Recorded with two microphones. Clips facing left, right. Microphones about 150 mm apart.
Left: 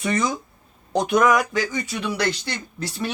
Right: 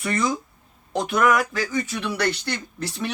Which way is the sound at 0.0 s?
20° left (ahead or behind).